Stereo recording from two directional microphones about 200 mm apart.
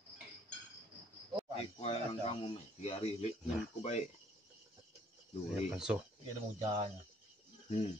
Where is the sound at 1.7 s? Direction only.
30° left (ahead or behind).